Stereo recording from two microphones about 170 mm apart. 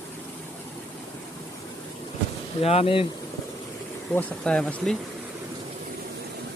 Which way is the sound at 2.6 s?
35° left (ahead or behind).